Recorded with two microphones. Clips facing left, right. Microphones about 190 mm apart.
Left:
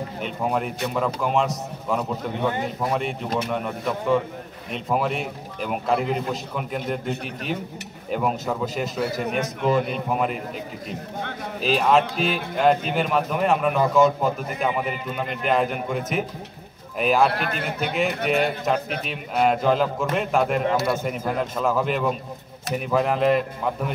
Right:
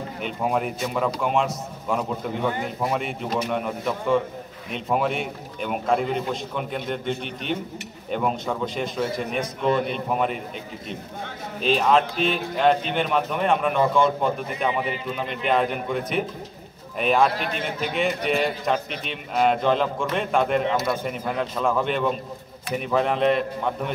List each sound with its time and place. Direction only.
0.2 s speech: centre (ahead or behind)
11.6 s speech: 5° left (ahead or behind)